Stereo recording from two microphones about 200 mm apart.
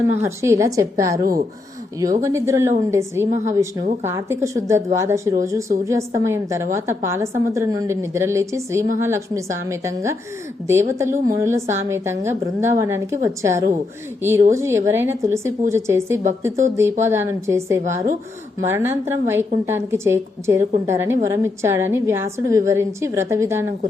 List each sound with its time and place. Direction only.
0.2 s a woman's voice: 15° right (ahead or behind)